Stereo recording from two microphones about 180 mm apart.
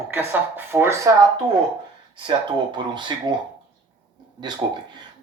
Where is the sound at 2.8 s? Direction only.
25° right (ahead or behind).